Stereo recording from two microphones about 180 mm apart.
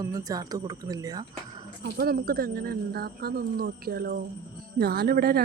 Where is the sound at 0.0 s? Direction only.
20° right (ahead or behind).